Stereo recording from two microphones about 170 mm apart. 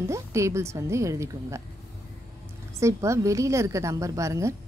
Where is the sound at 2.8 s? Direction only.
15° right (ahead or behind).